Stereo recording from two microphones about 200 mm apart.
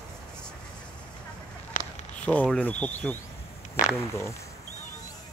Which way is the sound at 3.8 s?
40° left (ahead or behind).